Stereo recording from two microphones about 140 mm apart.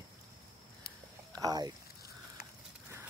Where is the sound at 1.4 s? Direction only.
30° right (ahead or behind).